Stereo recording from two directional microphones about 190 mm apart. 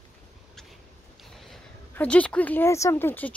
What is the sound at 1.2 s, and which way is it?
Speech, centre (ahead or behind).